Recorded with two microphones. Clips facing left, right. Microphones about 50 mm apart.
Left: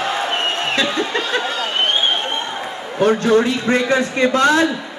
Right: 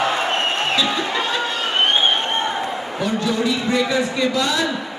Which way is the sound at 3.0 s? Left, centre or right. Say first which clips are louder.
Left 7 dB; left.